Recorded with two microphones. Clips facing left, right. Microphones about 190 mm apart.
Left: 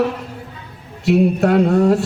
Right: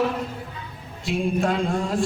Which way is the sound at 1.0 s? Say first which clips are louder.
Left 9 dB; 70° left (ahead or behind).